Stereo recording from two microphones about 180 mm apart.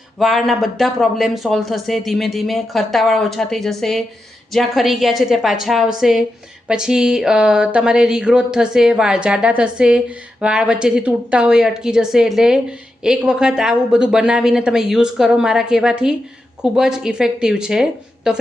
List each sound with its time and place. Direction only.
0.2 s speech: centre (ahead or behind)